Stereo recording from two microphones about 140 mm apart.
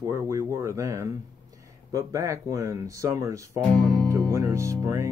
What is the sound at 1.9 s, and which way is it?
Speech, 20° right (ahead or behind).